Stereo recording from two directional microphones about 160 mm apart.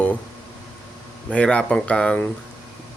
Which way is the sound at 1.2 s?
5° left (ahead or behind).